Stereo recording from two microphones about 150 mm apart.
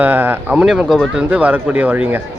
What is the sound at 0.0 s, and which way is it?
Speech, 10° right (ahead or behind).